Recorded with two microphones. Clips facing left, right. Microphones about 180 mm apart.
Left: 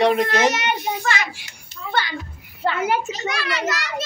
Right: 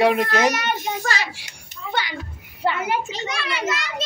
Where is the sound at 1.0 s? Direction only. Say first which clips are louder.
Left 2 dB; 35° right (ahead or behind).